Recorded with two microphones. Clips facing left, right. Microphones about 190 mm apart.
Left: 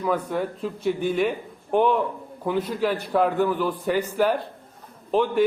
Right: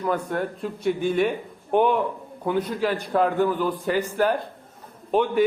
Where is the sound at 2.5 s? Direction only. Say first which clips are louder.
Even; 5° left (ahead or behind).